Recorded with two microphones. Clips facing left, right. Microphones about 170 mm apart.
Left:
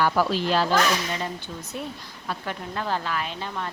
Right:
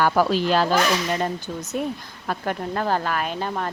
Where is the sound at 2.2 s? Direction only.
50° right (ahead or behind).